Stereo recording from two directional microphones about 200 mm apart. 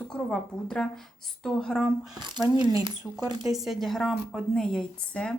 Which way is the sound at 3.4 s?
Centre (ahead or behind).